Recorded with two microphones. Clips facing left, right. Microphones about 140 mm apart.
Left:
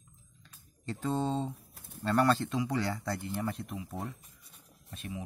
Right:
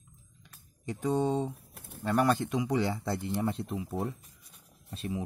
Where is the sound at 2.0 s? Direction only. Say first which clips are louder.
Even; 15° right (ahead or behind).